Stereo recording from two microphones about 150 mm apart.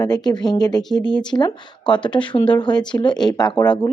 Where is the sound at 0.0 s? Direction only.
25° left (ahead or behind).